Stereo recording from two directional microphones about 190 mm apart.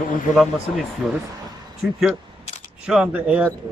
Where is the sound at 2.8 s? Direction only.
5° right (ahead or behind).